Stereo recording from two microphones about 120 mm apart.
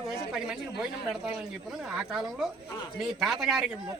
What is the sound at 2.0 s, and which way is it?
A man's voice, centre (ahead or behind).